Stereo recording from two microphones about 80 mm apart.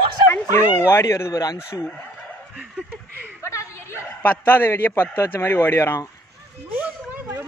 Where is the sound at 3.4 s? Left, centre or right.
Left.